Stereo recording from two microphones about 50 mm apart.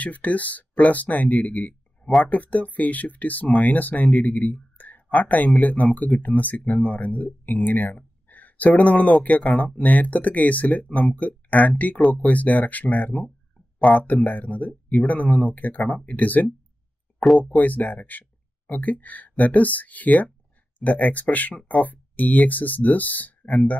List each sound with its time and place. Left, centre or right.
0.0 s speech: left